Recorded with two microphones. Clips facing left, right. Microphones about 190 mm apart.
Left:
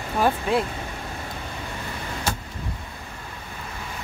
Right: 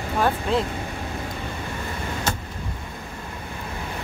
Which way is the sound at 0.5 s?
10° left (ahead or behind).